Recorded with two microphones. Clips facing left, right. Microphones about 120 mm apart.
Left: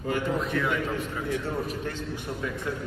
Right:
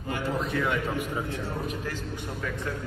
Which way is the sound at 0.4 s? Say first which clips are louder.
Even; centre (ahead or behind).